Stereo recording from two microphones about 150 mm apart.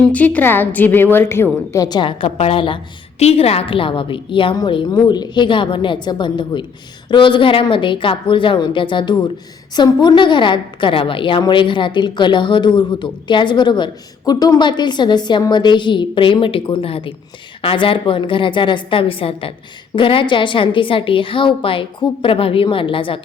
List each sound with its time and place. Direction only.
0.0 s a woman's voice: 10° left (ahead or behind)
1.7 s a woman's voice: 25° left (ahead or behind)